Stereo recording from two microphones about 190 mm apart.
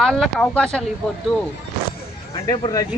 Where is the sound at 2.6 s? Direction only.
20° left (ahead or behind).